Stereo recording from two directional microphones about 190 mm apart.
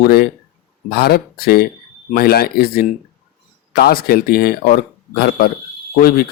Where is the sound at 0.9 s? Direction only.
55° left (ahead or behind).